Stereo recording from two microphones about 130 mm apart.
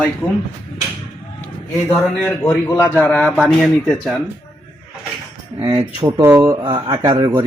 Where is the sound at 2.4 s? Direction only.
20° left (ahead or behind).